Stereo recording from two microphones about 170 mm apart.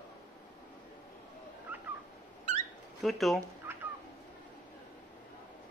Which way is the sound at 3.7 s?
15° right (ahead or behind).